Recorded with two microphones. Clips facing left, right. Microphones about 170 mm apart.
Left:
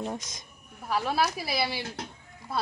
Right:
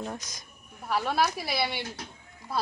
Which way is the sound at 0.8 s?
Centre (ahead or behind).